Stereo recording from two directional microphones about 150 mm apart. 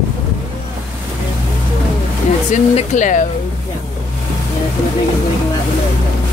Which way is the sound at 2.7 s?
55° left (ahead or behind).